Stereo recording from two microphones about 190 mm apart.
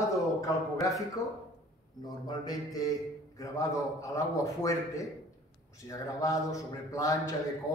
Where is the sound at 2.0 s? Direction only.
20° left (ahead or behind).